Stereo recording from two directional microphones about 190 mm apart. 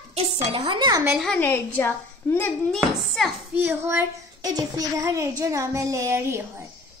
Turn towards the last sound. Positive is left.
turn(degrees=-15)  # may be behind; listen again after turning